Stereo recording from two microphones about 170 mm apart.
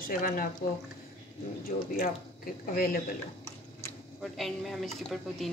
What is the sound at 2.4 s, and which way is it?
Speech, 55° left (ahead or behind).